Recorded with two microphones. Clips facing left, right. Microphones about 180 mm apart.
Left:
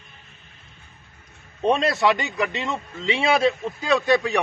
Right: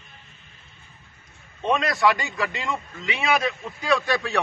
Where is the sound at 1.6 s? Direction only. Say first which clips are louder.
Left 2 dB; 30° left (ahead or behind).